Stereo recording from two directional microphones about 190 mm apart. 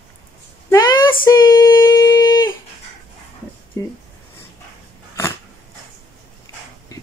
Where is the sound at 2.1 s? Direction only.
25° left (ahead or behind).